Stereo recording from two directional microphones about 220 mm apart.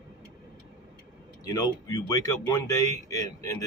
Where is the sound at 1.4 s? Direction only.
15° left (ahead or behind).